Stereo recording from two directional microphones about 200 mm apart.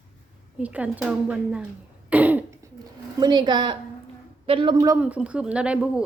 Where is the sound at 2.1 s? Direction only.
10° right (ahead or behind).